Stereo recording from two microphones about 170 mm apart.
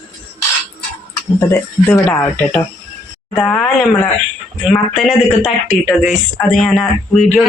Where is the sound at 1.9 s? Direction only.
10° left (ahead or behind).